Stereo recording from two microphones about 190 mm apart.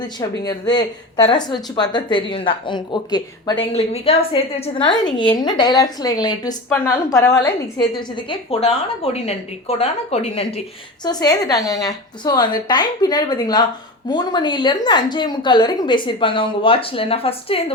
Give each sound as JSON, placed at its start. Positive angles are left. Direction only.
{"t": 0.0, "sound": "a woman's voice", "side_deg": 20}
{"t": 11.0, "sound": "a woman's voice", "side_deg": 20}